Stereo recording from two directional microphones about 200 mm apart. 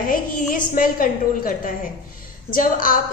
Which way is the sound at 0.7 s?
40° left (ahead or behind).